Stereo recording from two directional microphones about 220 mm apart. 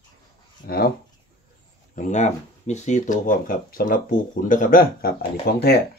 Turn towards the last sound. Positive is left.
turn(degrees=45)  # may be behind; listen again after turning